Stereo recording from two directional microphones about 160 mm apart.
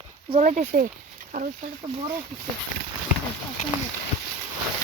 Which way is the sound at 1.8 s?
35° right (ahead or behind).